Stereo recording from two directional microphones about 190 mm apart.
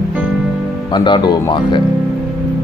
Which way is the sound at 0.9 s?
25° left (ahead or behind).